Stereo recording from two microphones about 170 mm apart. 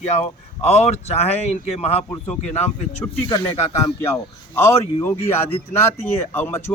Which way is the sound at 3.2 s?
25° left (ahead or behind).